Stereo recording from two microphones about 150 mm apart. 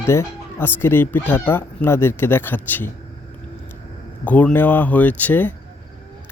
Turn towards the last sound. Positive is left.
turn(degrees=10)  # may be behind; listen again after turning